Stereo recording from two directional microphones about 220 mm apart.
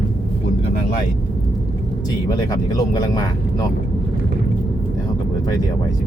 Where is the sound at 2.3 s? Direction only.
15° left (ahead or behind).